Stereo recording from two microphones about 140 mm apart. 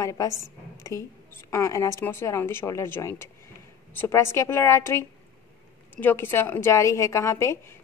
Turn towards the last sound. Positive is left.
turn(degrees=20)  # may be behind; listen again after turning